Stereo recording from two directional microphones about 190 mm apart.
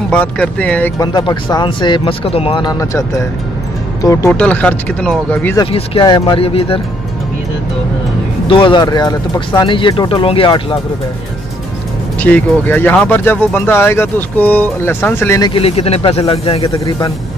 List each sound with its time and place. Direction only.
0.1 s speech: 5° left (ahead or behind)
1.0 s speech: 25° left (ahead or behind); by 5.6 s 5° left (ahead or behind)
5.6 s speech: 30° left (ahead or behind)
8.5 s speech: 25° left (ahead or behind)
12.2 s speech: 10° left (ahead or behind)
15.5 s speech: 30° left (ahead or behind)
16.7 s speech: 20° left (ahead or behind)